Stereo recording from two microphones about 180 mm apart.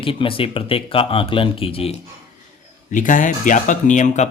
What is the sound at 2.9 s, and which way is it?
Speech, 45° left (ahead or behind).